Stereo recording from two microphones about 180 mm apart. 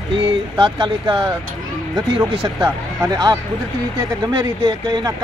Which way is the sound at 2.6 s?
20° right (ahead or behind).